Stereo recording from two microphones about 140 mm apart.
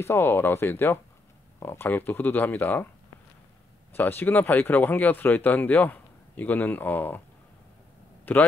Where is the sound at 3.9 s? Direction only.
15° left (ahead or behind).